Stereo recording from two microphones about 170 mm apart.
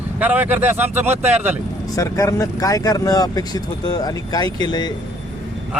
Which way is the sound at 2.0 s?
20° left (ahead or behind).